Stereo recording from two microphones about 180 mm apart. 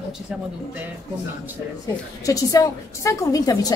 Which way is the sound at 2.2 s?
20° left (ahead or behind).